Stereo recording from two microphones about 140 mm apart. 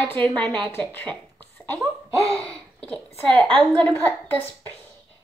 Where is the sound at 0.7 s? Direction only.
10° left (ahead or behind).